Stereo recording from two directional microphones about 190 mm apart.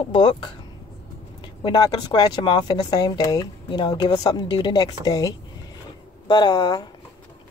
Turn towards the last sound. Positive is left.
turn(degrees=20)  # may be behind; listen again after turning